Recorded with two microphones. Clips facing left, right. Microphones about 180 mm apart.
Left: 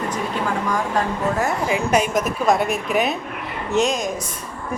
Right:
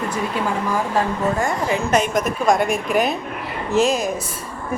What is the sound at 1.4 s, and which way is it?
A woman's voice, 5° left (ahead or behind).